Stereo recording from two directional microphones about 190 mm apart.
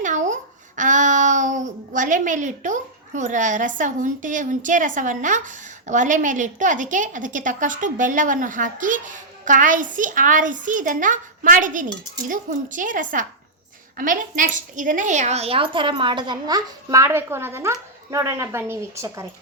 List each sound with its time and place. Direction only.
0.0 s babbling: 40° right (ahead or behind)
0.8 s a child's voice: 40° right (ahead or behind); by 19.3 s 15° right (ahead or behind)